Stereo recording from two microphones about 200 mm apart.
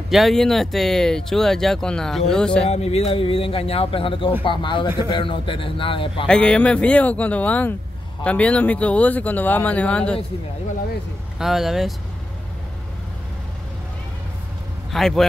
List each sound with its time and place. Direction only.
0.1 s speech: centre (ahead or behind)
2.6 s a man's voice: 30° left (ahead or behind)
6.2 s speech: 5° left (ahead or behind)
11.3 s speech: centre (ahead or behind)
14.9 s a man's voice: centre (ahead or behind)